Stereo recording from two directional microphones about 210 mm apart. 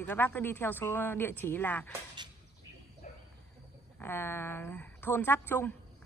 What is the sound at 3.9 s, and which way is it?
A woman's voice, 10° left (ahead or behind).